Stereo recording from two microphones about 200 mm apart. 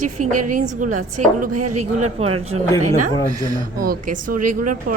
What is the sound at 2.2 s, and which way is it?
Speech, 30° right (ahead or behind).